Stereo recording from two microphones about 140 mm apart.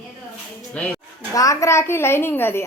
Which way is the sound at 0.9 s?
25° left (ahead or behind).